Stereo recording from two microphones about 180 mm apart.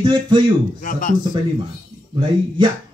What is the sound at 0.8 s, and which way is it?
Speech, 45° left (ahead or behind).